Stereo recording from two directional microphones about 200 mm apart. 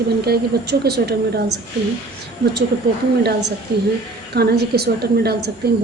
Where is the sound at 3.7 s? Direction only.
55° right (ahead or behind).